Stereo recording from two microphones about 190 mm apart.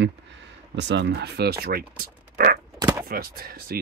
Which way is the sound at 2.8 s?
20° right (ahead or behind).